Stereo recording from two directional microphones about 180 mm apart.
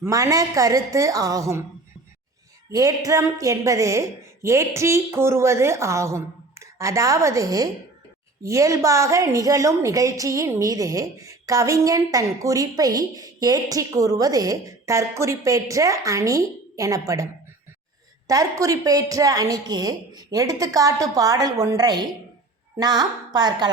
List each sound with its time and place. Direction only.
0.0 s a woman's voice: 20° right (ahead or behind)
2.7 s a woman's voice: 20° right (ahead or behind)
18.3 s a woman's voice: 20° right (ahead or behind)